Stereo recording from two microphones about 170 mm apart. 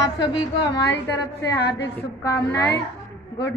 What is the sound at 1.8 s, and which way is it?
Speech, 15° left (ahead or behind).